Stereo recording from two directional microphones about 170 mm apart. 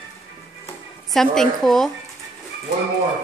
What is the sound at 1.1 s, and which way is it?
Speech, centre (ahead or behind).